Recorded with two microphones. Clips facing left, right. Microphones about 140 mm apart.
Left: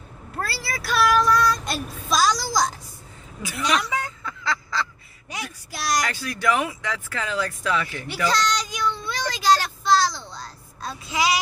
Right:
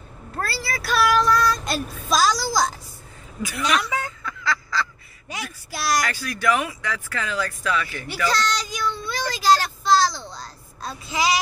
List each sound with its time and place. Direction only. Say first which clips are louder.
0.4 s child singing: right 2 dB; centre (ahead or behind)
3.4 s speech: right 1 dB; 20° left (ahead or behind)
4.2 s fowl: right 1 dB; 20° left (ahead or behind)
5.3 s child singing: right 1 dB; 5° right (ahead or behind)
5.9 s speech: right 1 dB; 20° left (ahead or behind)
8.3 s child singing: left 1 dB; 5° right (ahead or behind)